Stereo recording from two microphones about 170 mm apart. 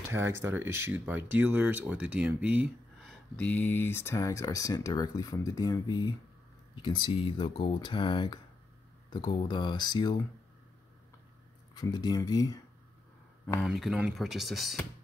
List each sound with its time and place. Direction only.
0.1 s speech: 15° right (ahead or behind); by 10.1 s 25° left (ahead or behind)
11.7 s speech: 25° left (ahead or behind)
13.7 s speech: 5° right (ahead or behind)